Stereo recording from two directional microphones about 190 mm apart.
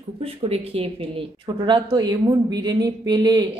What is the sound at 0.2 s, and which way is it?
Speech, 30° right (ahead or behind).